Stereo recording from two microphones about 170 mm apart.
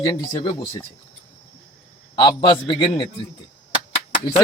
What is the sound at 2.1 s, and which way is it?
Speech, 25° left (ahead or behind).